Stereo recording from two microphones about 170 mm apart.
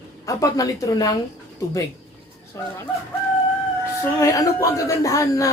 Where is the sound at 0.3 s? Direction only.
20° left (ahead or behind).